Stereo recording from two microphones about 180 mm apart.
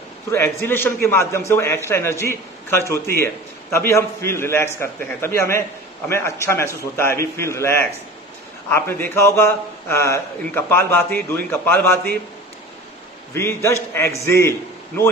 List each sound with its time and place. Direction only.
0.3 s speech: 15° left (ahead or behind)
13.3 s speech: 15° left (ahead or behind)